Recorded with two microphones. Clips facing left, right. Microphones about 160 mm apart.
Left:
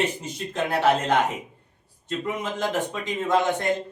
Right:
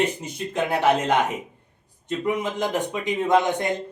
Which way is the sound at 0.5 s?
15° right (ahead or behind).